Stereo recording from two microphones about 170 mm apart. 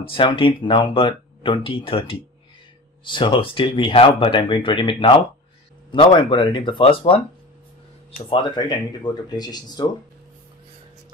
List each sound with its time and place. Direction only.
0.1 s speech: 30° left (ahead or behind)
8.3 s speech: 25° left (ahead or behind)